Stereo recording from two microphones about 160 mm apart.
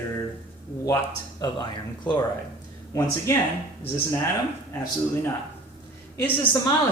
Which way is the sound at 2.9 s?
20° left (ahead or behind).